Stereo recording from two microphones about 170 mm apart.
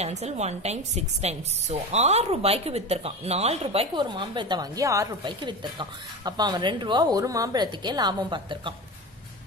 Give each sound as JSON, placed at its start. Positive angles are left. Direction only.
{"t": 0.0, "sound": "a woman's voice", "side_deg": -40}